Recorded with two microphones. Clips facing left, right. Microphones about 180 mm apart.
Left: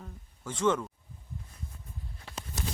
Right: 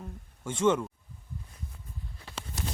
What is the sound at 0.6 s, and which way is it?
Speech, 10° right (ahead or behind).